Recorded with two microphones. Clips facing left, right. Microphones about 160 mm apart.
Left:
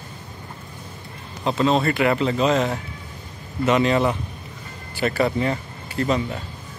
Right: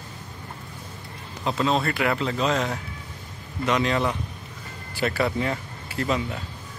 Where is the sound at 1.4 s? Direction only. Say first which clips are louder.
Left 4 dB; centre (ahead or behind).